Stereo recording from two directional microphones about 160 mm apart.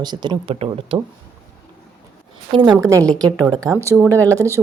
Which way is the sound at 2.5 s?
30° right (ahead or behind).